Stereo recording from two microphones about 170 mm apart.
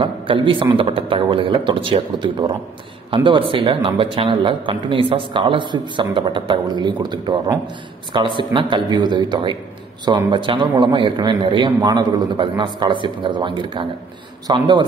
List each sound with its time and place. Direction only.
0.0 s a man's voice: 30° right (ahead or behind)